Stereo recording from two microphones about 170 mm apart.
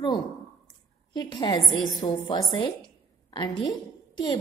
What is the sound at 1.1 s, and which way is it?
A woman's voice, 25° left (ahead or behind).